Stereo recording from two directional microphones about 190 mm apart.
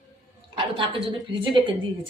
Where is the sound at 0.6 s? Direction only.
25° right (ahead or behind).